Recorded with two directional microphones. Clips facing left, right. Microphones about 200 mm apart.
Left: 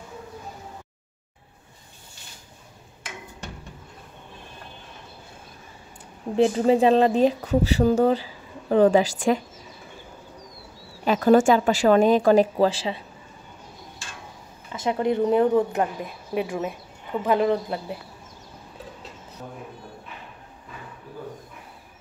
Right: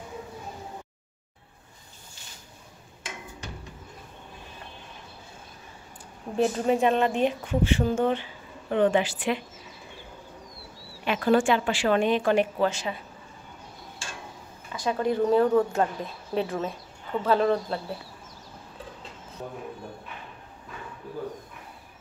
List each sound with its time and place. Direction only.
6.3 s a woman's voice: 25° left (ahead or behind)
11.1 s a woman's voice: 40° left (ahead or behind)
14.7 s speech: 20° left (ahead or behind)